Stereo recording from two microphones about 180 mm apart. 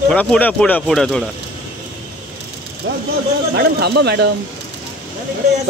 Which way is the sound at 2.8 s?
90° right.